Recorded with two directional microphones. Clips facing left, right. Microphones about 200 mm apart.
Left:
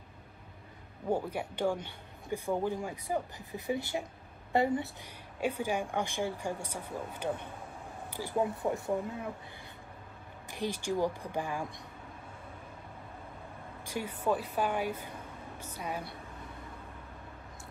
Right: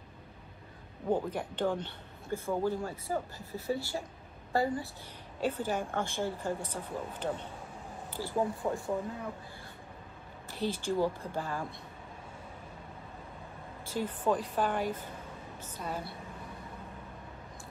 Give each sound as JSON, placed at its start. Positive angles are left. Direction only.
{"t": 1.1, "sound": "a woman's voice", "side_deg": 10}
{"t": 10.5, "sound": "speech", "side_deg": 15}
{"t": 13.8, "sound": "speech", "side_deg": 10}